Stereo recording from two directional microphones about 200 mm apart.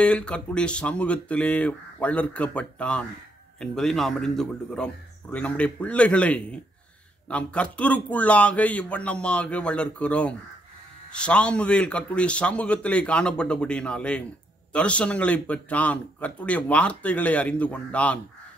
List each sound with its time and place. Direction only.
0.0 s a man's voice: 5° left (ahead or behind)